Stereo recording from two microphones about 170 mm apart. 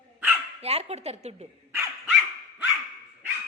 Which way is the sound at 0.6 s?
35° right (ahead or behind).